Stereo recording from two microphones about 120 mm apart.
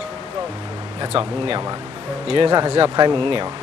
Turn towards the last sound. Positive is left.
turn(degrees=-40)  # may be behind; listen again after turning